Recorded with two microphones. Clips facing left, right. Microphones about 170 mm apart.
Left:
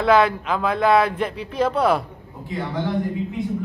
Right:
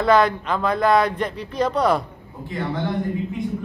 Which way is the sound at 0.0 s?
5° left (ahead or behind).